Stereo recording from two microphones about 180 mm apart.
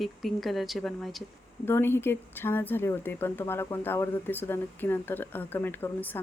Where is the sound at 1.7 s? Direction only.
15° left (ahead or behind).